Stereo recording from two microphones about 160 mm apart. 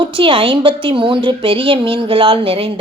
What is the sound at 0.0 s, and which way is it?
A woman's voice, 35° right (ahead or behind).